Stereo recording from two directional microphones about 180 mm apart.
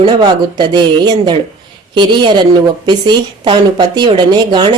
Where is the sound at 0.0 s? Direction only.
25° right (ahead or behind).